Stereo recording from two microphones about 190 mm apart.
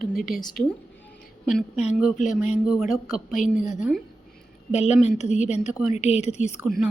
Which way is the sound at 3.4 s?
40° left (ahead or behind).